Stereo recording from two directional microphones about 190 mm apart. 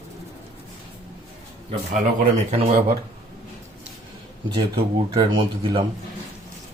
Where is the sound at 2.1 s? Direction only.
35° right (ahead or behind).